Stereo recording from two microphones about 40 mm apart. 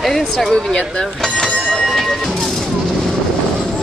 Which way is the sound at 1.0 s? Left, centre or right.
Centre.